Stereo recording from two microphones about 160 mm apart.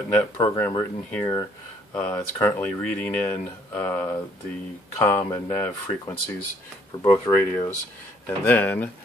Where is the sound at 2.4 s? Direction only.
10° left (ahead or behind).